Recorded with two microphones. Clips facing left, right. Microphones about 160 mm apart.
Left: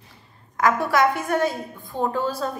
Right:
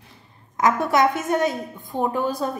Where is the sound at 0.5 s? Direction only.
20° right (ahead or behind).